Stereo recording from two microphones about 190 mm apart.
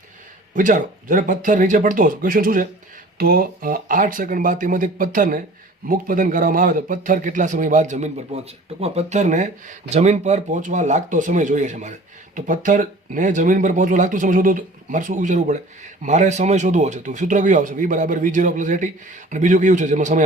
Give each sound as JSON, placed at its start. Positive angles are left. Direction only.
{"t": 0.5, "sound": "a man's voice", "side_deg": -45}